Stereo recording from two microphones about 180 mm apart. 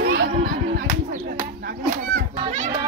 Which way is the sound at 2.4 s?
40° right (ahead or behind).